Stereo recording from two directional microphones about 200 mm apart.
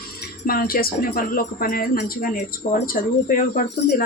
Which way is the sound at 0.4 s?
45° left (ahead or behind).